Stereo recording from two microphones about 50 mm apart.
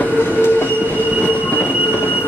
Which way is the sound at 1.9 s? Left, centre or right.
Left.